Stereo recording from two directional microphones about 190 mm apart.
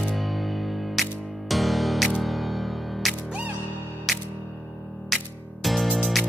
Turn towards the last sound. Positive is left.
turn(degrees=0)  # may be behind; listen again after turning